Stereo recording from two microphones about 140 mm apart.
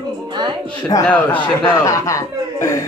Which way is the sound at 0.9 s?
25° left (ahead or behind).